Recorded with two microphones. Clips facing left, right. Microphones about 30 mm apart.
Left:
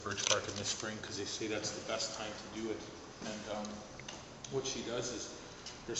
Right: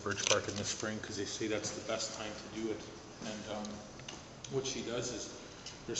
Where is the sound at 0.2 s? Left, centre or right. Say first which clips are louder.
Right 1 dB; centre.